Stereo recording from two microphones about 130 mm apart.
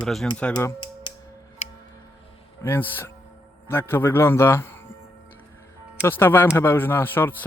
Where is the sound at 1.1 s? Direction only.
35° left (ahead or behind).